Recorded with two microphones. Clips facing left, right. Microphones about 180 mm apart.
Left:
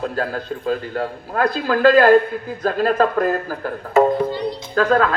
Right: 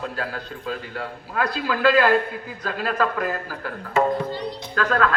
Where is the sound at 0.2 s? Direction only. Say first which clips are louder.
Left 7 dB; 45° left (ahead or behind).